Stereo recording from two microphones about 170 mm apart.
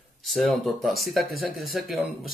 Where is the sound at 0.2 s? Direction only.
Centre (ahead or behind).